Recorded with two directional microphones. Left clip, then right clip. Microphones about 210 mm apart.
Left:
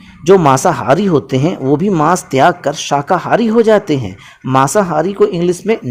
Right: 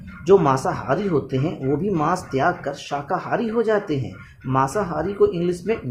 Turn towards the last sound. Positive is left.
turn(degrees=40)  # may be behind; listen again after turning